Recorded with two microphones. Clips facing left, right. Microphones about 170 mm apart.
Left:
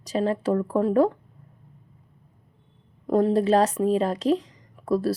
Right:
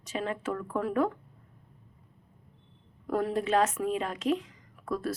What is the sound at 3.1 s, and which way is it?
Speech, 30° left (ahead or behind).